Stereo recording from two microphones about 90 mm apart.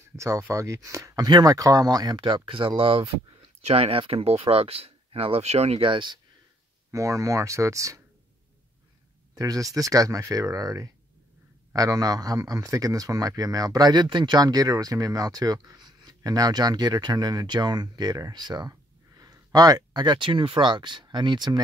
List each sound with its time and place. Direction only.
0.1 s a man's voice: 35° right (ahead or behind); by 2.7 s 75° right (ahead or behind)
2.8 s speech: 90° right; by 6.1 s 70° right (ahead or behind)
6.9 s speech: 35° right (ahead or behind)
9.3 s a man's voice: 40° right (ahead or behind); by 21.5 s 55° right (ahead or behind)